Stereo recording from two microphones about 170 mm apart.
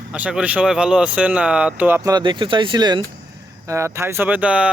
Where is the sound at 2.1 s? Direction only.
25° right (ahead or behind).